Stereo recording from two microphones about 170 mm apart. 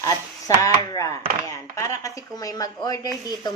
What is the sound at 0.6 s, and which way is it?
Chopping, 20° left (ahead or behind).